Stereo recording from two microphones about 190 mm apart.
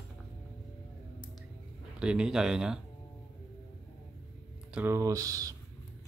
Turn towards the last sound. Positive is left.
turn(degrees=-20)  # may be behind; listen again after turning